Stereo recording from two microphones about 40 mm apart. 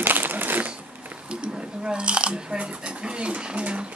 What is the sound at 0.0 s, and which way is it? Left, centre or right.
Typewriter, right.